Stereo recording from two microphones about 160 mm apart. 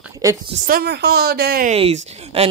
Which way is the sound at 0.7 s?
80° right.